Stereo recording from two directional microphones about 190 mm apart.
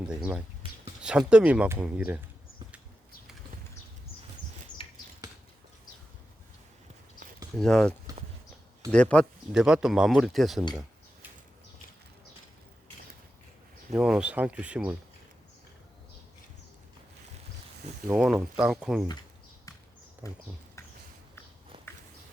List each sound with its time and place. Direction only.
0.1 s speech: 5° right (ahead or behind)
4.8 s a sound: 30° left (ahead or behind)
7.6 s speech: 5° left (ahead or behind)
13.9 s speech: 5° right (ahead or behind)
18.1 s speech: 5° right (ahead or behind)
20.2 s speech: 15° left (ahead or behind)